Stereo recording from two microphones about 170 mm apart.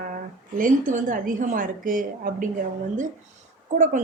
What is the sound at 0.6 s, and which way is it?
A woman's voice, 50° right (ahead or behind).